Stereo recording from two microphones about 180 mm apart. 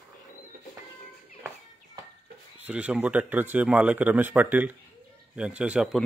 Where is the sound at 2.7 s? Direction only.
5° right (ahead or behind).